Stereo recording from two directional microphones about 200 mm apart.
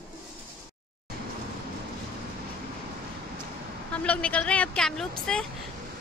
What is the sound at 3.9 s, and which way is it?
Speech, 5° left (ahead or behind).